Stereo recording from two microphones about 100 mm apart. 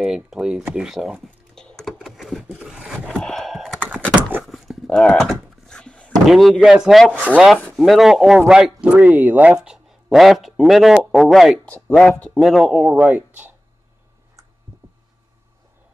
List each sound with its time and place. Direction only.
0.0 s speech: 5° right (ahead or behind)
0.7 s computer keyboard: 5° right (ahead or behind)
2.0 s a sound: centre (ahead or behind)
3.1 s gasp: 5° left (ahead or behind)
4.1 s a sound: 20° right (ahead or behind)
4.5 s dog: centre (ahead or behind)
4.8 s door: 5° left (ahead or behind)
6.6 s speech: 5° right (ahead or behind)
7.5 s a sound: 5° left (ahead or behind)
7.8 s speech: centre (ahead or behind)
9.6 s speech: 5° right (ahead or behind)
11.6 s speech: 10° left (ahead or behind); by 13.6 s 15° right (ahead or behind)